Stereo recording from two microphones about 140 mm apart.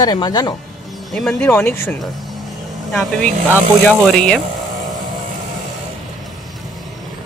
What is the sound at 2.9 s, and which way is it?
Speech, 5° left (ahead or behind).